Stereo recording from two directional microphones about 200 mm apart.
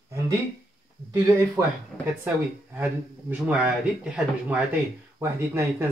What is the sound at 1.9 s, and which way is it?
Speech, 5° left (ahead or behind).